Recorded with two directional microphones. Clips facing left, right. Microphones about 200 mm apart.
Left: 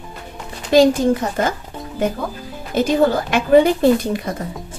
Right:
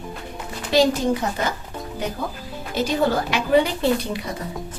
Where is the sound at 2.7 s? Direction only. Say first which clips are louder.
Left 5 dB; 50° left (ahead or behind).